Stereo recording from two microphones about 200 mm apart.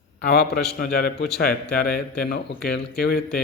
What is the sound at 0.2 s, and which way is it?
Speech, 50° left (ahead or behind).